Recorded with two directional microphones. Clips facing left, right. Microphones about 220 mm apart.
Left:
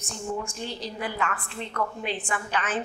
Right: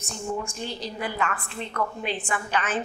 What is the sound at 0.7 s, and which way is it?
A woman's voice, 15° right (ahead or behind).